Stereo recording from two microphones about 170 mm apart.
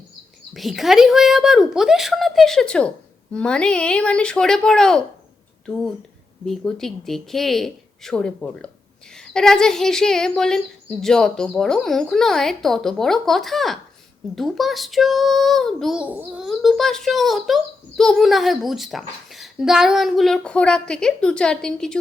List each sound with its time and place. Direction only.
0.5 s child singing: centre (ahead or behind)
6.4 s child singing: 5° left (ahead or behind)